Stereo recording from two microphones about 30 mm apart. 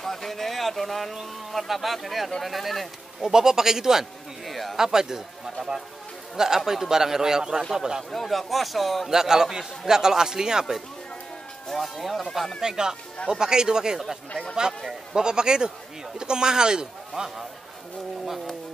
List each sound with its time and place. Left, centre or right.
0.0 s a sound: centre
1.5 s a man's voice: centre
3.2 s a man's voice: centre
4.5 s a sound: centre
4.7 s a man's voice: centre
8.1 s a man's voice: centre
9.1 s a man's voice: centre
11.8 s a man's voice: centre
12.6 s a man's voice: right
15.1 s a man's voice: right